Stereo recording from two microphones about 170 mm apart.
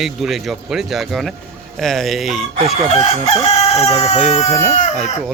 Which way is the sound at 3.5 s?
40° left (ahead or behind).